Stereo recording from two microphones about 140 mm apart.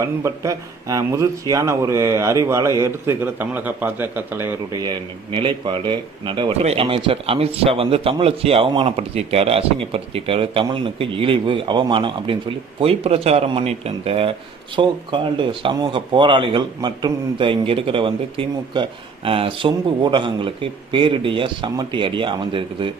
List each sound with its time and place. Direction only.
0.0 s speech: 25° right (ahead or behind)
4.8 s speech: 35° right (ahead or behind)
6.5 s speech: 50° right (ahead or behind)
6.8 s speech: 40° right (ahead or behind)